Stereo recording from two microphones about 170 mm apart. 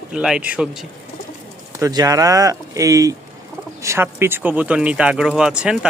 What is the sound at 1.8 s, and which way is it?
Speech, 20° right (ahead or behind).